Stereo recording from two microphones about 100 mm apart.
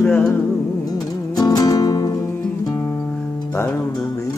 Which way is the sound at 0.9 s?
40° left (ahead or behind).